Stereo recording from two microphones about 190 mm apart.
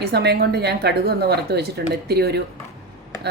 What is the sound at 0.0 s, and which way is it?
Speech, 60° right (ahead or behind).